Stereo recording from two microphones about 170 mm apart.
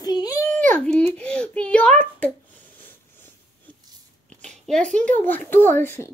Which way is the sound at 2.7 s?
10° left (ahead or behind).